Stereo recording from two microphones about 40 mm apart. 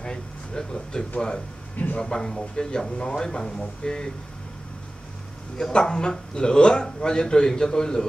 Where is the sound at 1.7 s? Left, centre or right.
Left.